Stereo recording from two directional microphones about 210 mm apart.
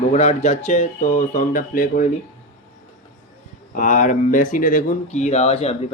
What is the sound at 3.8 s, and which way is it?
Speech, 35° left (ahead or behind).